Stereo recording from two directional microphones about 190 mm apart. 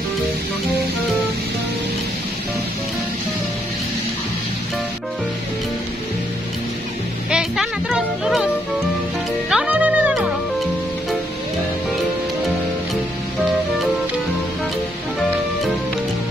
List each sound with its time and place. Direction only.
7.2 s music: 5° right (ahead or behind)
9.5 s music: 5° right (ahead or behind)